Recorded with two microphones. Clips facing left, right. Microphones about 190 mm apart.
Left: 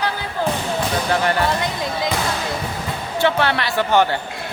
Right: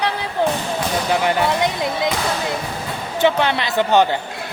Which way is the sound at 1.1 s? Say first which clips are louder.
Right 2 dB; 15° right (ahead or behind).